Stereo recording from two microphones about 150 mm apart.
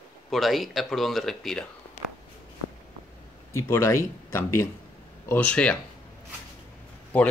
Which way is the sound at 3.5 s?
20° left (ahead or behind).